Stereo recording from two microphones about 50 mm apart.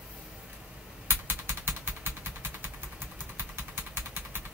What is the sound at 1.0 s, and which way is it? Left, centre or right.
Typing, right.